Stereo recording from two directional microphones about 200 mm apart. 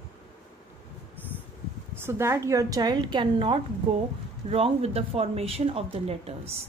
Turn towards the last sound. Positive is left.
turn(degrees=-30)  # may be behind; listen again after turning